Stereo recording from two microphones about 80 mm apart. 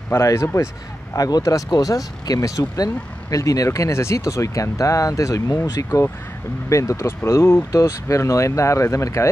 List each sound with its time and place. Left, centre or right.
0.1 s speech: left
1.1 s speech: left